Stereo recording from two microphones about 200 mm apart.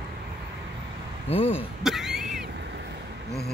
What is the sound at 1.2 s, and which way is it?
Speech, 30° left (ahead or behind).